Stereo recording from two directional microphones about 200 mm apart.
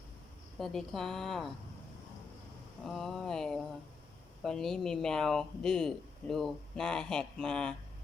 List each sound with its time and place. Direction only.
0.6 s speech: centre (ahead or behind)
2.8 s speech: centre (ahead or behind)